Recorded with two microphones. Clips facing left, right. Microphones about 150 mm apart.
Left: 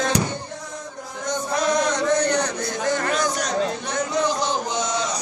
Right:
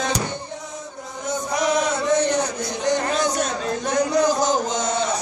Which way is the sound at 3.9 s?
40° right (ahead or behind).